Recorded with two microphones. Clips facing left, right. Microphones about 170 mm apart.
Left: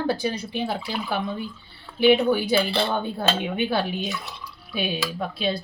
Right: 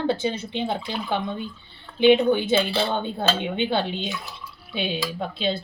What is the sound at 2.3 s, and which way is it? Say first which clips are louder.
Speech: even; 25° right (ahead or behind).